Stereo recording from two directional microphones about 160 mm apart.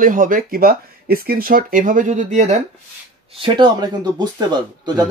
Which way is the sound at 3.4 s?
30° right (ahead or behind).